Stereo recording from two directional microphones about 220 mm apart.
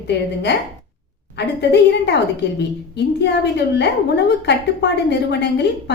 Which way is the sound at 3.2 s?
50° left (ahead or behind).